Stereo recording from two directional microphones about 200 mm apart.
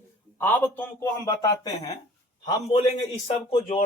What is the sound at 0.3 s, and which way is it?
A man's voice, 10° left (ahead or behind).